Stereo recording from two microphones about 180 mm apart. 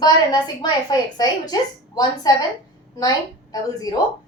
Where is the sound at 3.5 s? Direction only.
20° left (ahead or behind).